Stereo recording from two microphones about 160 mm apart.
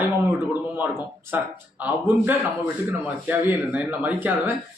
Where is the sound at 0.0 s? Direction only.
15° right (ahead or behind).